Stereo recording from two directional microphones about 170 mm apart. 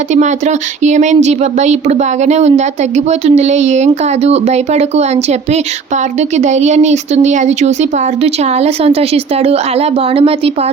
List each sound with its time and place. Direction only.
0.1 s speech: 45° right (ahead or behind)